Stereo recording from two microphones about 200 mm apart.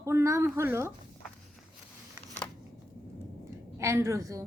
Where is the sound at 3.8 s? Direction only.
15° right (ahead or behind).